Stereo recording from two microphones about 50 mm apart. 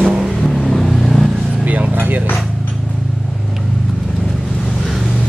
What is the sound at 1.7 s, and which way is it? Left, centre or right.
Speech, right.